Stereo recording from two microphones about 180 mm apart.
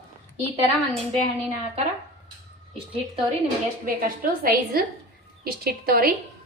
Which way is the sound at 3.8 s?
55° right (ahead or behind).